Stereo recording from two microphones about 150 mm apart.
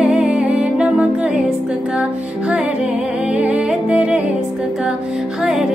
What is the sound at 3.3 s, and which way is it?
Music, 10° right (ahead or behind).